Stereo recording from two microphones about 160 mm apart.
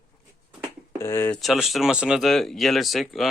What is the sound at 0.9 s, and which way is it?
Speech, 15° left (ahead or behind).